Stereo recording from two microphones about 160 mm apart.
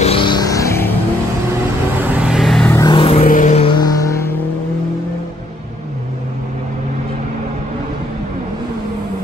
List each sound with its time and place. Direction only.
0.0 s music: 35° left (ahead or behind); by 0.9 s 15° left (ahead or behind)
1.5 s vehicle: 10° right (ahead or behind)
2.6 s vehicle: 15° left (ahead or behind)
2.9 s vehicle: 35° left (ahead or behind)
3.3 s a sound: 50° left (ahead or behind)
3.6 s vehicle: 25° left (ahead or behind)